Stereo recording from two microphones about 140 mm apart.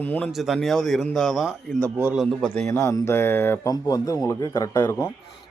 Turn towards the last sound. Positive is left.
turn(degrees=20)  # may be behind; listen again after turning